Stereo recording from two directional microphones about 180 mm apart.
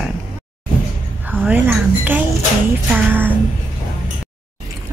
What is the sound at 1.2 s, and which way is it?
Speech, 10° right (ahead or behind).